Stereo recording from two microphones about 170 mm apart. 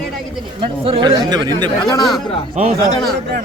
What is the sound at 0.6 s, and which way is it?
Speech, 30° right (ahead or behind).